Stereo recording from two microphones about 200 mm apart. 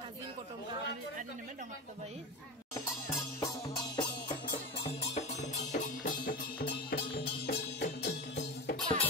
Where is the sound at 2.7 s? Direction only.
15° left (ahead or behind).